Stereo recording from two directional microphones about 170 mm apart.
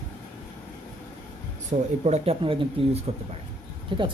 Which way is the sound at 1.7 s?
40° right (ahead or behind).